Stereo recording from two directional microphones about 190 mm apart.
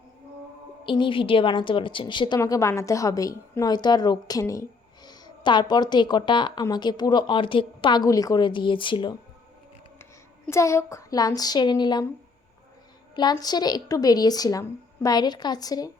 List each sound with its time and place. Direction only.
0.9 s a woman's voice: 25° left (ahead or behind)
10.4 s a woman's voice: 15° left (ahead or behind)
13.1 s a woman's voice: 20° left (ahead or behind)